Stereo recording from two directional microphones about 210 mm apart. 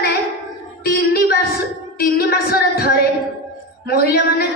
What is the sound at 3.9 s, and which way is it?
Speech, 45° left (ahead or behind).